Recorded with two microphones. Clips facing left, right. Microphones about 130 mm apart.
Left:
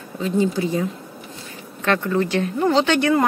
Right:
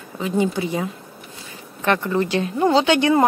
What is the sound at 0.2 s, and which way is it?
Speech, 15° right (ahead or behind).